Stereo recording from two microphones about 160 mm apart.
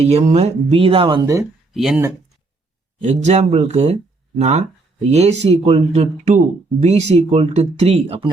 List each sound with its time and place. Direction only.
0.0 s speech: 40° right (ahead or behind)
1.2 s speech: 20° right (ahead or behind)
1.7 s speech: centre (ahead or behind)
3.0 s speech: 45° right (ahead or behind)